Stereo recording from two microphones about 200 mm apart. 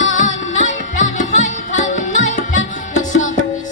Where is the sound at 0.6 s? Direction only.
40° left (ahead or behind).